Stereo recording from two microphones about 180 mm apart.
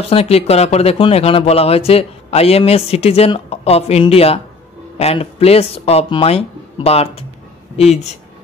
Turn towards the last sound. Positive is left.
turn(degrees=35)  # may be behind; listen again after turning